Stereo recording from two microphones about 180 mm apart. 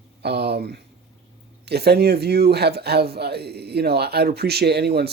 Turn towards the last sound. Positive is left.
turn(degrees=-65)  # may be behind; listen again after turning